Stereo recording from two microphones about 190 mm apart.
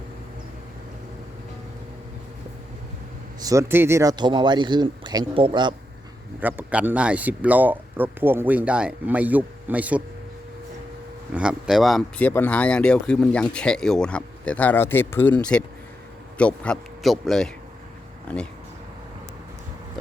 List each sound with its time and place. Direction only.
3.4 s speech: 15° right (ahead or behind)
6.4 s speech: 10° right (ahead or behind)
11.3 s speech: 5° right (ahead or behind)